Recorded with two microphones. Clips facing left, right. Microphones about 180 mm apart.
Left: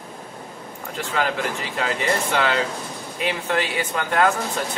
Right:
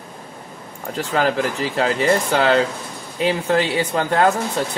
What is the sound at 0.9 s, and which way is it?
A man's voice, 35° right (ahead or behind).